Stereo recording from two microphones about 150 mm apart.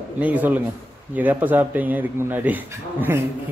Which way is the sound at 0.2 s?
10° right (ahead or behind).